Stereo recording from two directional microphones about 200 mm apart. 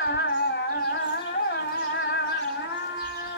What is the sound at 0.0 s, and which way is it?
Carnatic music, 60° left (ahead or behind).